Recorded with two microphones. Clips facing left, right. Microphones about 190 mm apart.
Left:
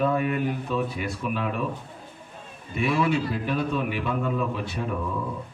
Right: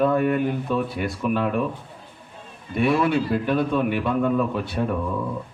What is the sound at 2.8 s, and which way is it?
A man's voice, 50° right (ahead or behind).